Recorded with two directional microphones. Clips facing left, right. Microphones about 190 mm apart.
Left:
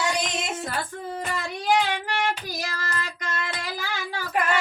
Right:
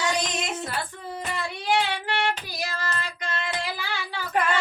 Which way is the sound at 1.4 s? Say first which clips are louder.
Left 2 dB; 45° left (ahead or behind).